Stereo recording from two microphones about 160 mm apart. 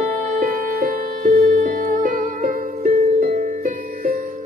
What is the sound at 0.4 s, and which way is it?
Music, 60° right (ahead or behind).